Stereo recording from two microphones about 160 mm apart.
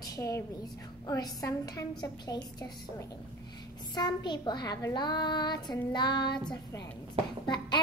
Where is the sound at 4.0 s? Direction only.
25° left (ahead or behind).